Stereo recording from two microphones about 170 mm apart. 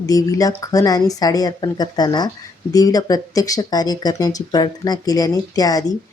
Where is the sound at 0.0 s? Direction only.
20° left (ahead or behind).